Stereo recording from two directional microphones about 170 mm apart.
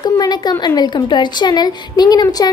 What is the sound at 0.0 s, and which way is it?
A woman's voice, 25° left (ahead or behind).